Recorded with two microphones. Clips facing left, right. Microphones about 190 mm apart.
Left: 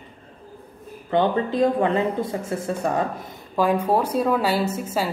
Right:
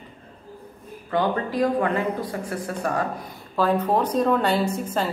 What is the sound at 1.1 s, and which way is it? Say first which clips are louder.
Speech: left 3 dB; 25° left (ahead or behind).